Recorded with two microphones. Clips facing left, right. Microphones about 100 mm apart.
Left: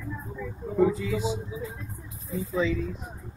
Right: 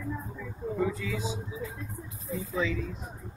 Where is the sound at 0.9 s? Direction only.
5° left (ahead or behind).